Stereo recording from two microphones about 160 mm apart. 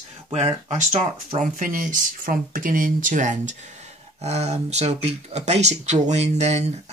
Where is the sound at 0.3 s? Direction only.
40° right (ahead or behind).